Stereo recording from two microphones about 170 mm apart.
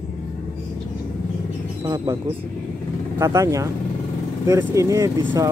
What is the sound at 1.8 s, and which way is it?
Speech, 20° right (ahead or behind).